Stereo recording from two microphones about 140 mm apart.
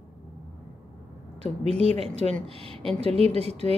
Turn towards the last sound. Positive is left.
turn(degrees=-45)  # may be behind; listen again after turning